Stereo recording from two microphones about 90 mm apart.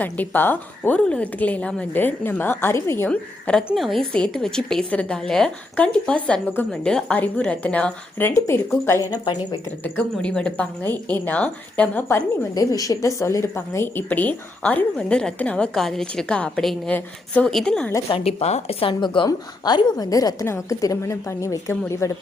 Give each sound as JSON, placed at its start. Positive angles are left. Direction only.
{"t": 0.0, "sound": "a woman's voice", "side_deg": 20}
{"t": 3.1, "sound": "a woman's voice", "side_deg": 15}
{"t": 3.8, "sound": "a woman's voice", "side_deg": 0}
{"t": 8.4, "sound": "a woman's voice", "side_deg": 30}
{"t": 9.0, "sound": "a woman's voice", "side_deg": 45}
{"t": 9.8, "sound": "a woman's voice", "side_deg": 10}
{"t": 12.0, "sound": "a woman's voice", "side_deg": 30}
{"t": 12.5, "sound": "a woman's voice", "side_deg": 40}
{"t": 18.1, "sound": "a woman's voice", "side_deg": 90}